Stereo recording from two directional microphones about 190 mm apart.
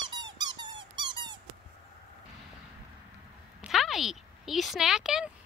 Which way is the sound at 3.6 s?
Centre (ahead or behind).